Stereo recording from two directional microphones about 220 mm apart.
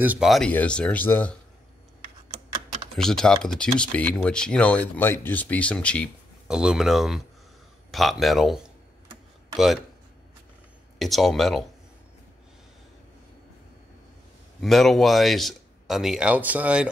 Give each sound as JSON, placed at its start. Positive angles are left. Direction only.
{"t": 0.0, "sound": "speech", "side_deg": -5}
{"t": 3.0, "sound": "speech", "side_deg": 0}
{"t": 11.0, "sound": "speech", "side_deg": 0}
{"t": 14.6, "sound": "speech", "side_deg": 0}